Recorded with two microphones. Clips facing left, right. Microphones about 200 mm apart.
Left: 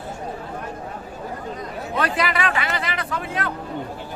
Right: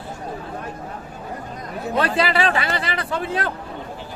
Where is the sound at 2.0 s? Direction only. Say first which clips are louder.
Right 3 dB; 30° right (ahead or behind).